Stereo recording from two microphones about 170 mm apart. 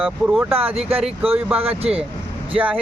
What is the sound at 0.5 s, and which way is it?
Speech, 35° right (ahead or behind).